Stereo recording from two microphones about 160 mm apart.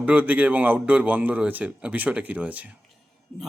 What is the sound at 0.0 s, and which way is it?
A man's voice, 10° right (ahead or behind).